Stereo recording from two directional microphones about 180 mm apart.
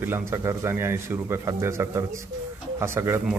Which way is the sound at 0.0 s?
15° right (ahead or behind).